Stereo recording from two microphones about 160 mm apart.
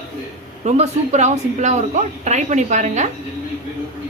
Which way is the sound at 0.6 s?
45° right (ahead or behind).